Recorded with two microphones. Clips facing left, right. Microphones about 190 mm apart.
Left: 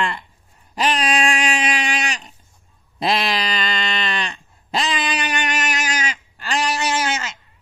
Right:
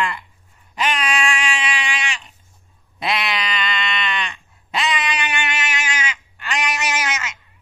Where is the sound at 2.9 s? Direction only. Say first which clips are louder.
Left 3 dB; 35° left (ahead or behind).